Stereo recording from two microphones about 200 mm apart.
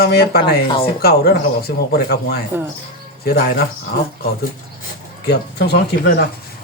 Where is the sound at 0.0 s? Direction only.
50° left (ahead or behind).